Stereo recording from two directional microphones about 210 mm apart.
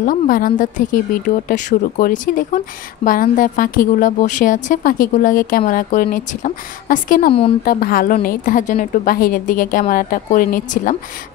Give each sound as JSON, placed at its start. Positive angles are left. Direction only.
{"t": 0.0, "sound": "a woman's voice", "side_deg": 40}